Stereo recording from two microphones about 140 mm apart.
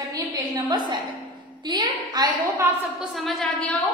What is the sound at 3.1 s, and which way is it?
Speech, centre (ahead or behind).